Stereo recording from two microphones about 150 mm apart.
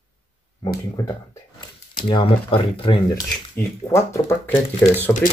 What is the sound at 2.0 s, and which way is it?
Speech, 35° left (ahead or behind).